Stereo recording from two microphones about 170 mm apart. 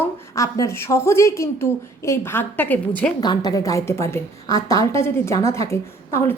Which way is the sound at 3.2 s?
25° left (ahead or behind).